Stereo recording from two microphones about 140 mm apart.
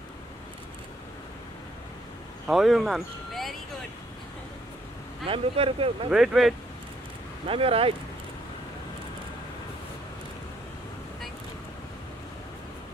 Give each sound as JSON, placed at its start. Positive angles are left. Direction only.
{"t": 2.4, "sound": "speech", "side_deg": 0}
{"t": 5.3, "sound": "speech", "side_deg": -40}
{"t": 6.0, "sound": "speech", "side_deg": -5}
{"t": 7.4, "sound": "speech", "side_deg": -40}